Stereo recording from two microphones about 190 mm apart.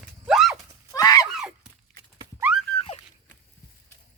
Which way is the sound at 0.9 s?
20° left (ahead or behind).